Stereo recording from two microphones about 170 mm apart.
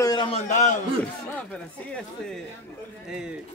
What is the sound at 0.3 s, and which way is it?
Speech, 45° left (ahead or behind).